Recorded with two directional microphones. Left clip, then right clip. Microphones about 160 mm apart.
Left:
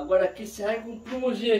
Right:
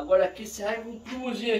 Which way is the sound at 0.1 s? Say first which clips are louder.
Right 1 dB; 35° right (ahead or behind).